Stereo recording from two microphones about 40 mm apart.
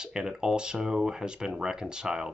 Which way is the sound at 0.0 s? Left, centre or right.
Centre.